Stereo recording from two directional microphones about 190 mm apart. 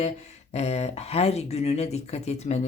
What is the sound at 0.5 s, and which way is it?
Speech, 35° left (ahead or behind).